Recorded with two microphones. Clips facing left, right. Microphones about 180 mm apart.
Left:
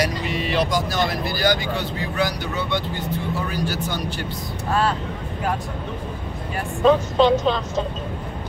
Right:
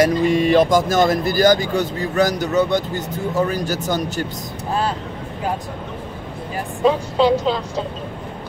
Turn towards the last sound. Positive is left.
turn(degrees=-10)  # may be behind; listen again after turning